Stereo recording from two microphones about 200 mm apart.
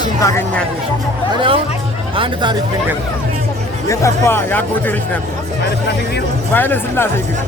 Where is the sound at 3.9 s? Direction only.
15° left (ahead or behind).